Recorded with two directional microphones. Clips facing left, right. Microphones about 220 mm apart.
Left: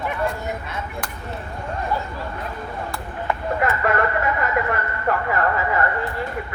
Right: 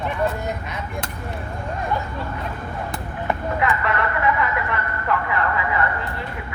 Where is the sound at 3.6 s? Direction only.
50° left (ahead or behind).